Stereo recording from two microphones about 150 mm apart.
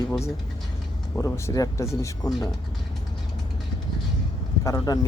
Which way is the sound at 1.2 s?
20° left (ahead or behind).